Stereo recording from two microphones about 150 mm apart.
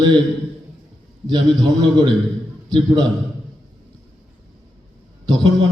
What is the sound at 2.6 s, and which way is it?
Speech, 30° right (ahead or behind).